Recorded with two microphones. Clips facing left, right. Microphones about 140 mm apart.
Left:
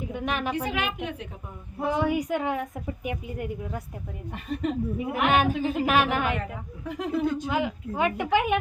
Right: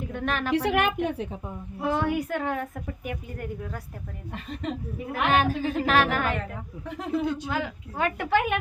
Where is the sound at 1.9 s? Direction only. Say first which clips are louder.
Left 1 dB; 15° left (ahead or behind).